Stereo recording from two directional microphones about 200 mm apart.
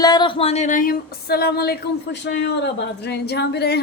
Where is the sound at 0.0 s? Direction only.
20° left (ahead or behind).